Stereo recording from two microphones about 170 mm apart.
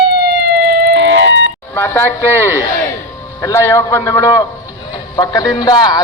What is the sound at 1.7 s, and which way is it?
Speech, 15° left (ahead or behind).